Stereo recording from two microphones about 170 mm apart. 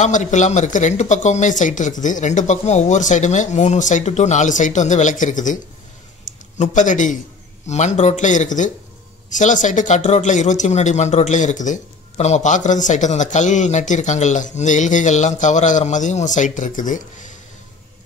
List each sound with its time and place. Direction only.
0.0 s speech: 45° left (ahead or behind)
6.6 s speech: 45° left (ahead or behind)